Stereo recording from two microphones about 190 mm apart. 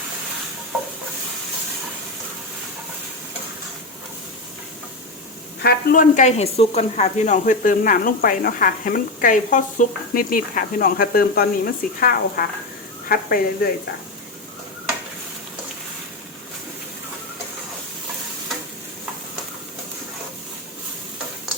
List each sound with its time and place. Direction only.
5.6 s speech: 45° left (ahead or behind)